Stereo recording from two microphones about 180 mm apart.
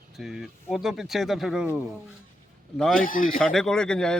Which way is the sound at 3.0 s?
50° left (ahead or behind).